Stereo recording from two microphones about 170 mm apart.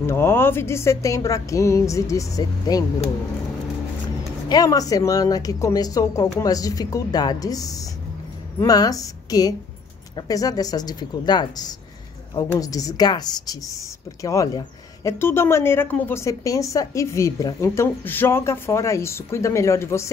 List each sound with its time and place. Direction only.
0.0 s a woman's voice: 15° left (ahead or behind)
4.5 s a woman's voice: 20° left (ahead or behind)